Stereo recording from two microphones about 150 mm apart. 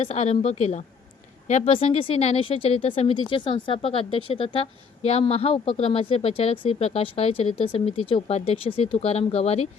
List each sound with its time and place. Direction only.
0.0 s a woman's voice: 50° left (ahead or behind)